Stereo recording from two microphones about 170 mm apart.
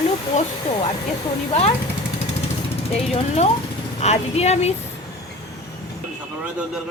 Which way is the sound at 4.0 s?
40° left (ahead or behind).